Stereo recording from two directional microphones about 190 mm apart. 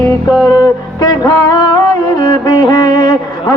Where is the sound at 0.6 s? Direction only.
20° left (ahead or behind).